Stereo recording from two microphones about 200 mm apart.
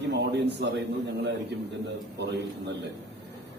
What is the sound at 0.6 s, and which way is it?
Speech, 60° right (ahead or behind).